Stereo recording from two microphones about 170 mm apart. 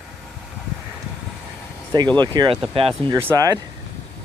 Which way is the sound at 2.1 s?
25° right (ahead or behind).